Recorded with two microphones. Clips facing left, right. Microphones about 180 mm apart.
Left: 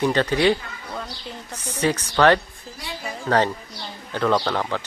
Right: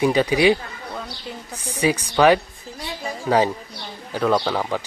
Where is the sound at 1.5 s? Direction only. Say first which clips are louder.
Right 2 dB; 10° right (ahead or behind).